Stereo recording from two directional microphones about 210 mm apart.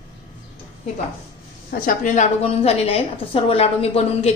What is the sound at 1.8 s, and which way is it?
A woman's voice, 35° left (ahead or behind).